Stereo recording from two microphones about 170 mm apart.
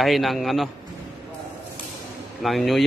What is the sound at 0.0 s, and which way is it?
Speech, centre (ahead or behind).